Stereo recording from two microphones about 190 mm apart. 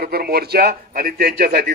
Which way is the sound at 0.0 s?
55° right (ahead or behind).